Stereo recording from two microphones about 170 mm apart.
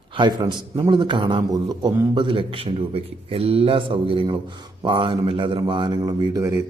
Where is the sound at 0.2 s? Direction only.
25° right (ahead or behind).